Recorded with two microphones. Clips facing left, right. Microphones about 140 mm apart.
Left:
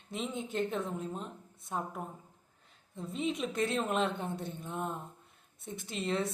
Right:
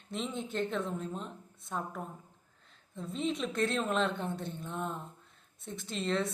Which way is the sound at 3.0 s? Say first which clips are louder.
Even; 10° left (ahead or behind).